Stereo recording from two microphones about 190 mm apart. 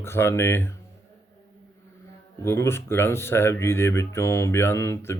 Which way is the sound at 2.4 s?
15° left (ahead or behind).